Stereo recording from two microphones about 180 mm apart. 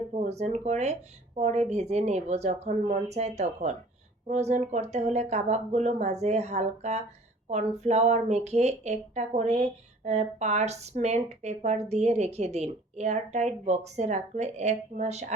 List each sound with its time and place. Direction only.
0.1 s speech: 40° right (ahead or behind)